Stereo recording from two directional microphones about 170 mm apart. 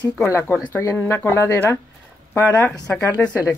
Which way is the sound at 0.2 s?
15° left (ahead or behind).